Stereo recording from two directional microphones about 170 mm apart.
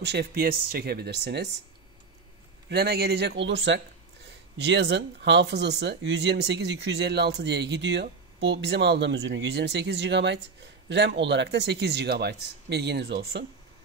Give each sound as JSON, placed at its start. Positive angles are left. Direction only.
{"t": 0.0, "sound": "speech", "side_deg": -75}
{"t": 2.7, "sound": "speech", "side_deg": -70}